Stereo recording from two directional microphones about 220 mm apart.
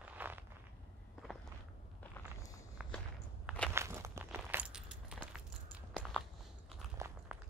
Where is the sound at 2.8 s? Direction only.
5° right (ahead or behind).